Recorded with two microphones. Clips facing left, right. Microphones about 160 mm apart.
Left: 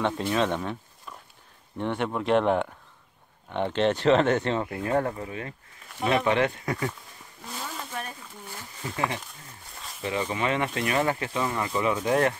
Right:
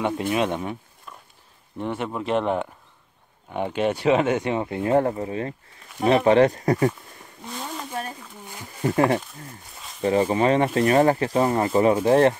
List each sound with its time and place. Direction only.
0.0 s speech: 15° right (ahead or behind)
1.8 s speech: 5° right (ahead or behind)
4.6 s speech: 25° right (ahead or behind)
8.8 s speech: 50° right (ahead or behind)
10.0 s speech: 35° right (ahead or behind)